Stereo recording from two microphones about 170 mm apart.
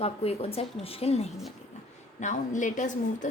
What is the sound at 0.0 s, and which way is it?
A woman's voice, 35° left (ahead or behind).